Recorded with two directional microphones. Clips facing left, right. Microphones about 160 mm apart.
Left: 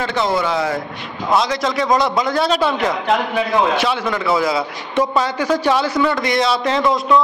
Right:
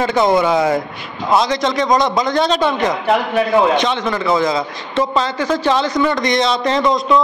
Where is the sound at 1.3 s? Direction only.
Centre (ahead or behind).